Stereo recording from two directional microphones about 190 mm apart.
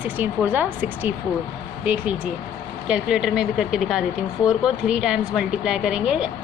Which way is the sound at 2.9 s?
5° right (ahead or behind).